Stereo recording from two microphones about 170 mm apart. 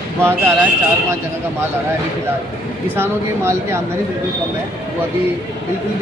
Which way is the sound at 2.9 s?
15° right (ahead or behind).